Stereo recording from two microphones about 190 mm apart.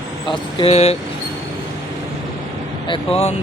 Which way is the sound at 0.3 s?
30° left (ahead or behind).